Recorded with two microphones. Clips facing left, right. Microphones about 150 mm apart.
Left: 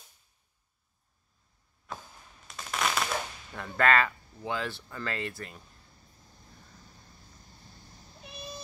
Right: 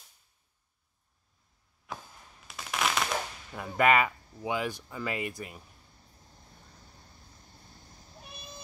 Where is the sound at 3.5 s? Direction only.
10° right (ahead or behind).